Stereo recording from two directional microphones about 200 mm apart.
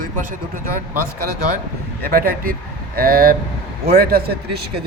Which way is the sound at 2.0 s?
50° right (ahead or behind).